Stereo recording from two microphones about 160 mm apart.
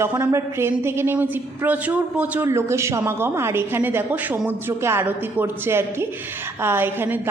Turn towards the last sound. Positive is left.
turn(degrees=-15)  # may be behind; listen again after turning